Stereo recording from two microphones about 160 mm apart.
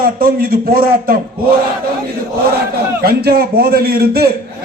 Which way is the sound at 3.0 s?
70° right (ahead or behind).